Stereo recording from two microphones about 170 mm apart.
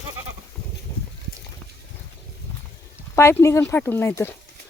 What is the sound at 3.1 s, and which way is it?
Speech, 15° left (ahead or behind).